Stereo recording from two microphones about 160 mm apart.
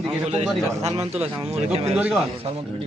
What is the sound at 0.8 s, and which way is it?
Speech, 40° right (ahead or behind).